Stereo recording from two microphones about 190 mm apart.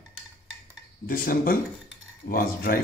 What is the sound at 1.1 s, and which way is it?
Speech, 50° left (ahead or behind).